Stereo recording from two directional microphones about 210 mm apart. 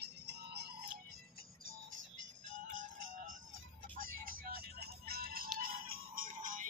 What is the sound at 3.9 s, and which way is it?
Music, 40° right (ahead or behind).